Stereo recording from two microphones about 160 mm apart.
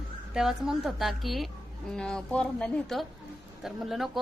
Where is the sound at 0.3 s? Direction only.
Centre (ahead or behind).